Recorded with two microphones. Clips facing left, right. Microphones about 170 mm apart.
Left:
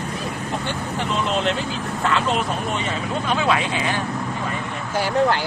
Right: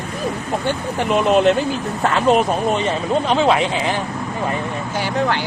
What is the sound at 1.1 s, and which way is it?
Speech, 60° right (ahead or behind).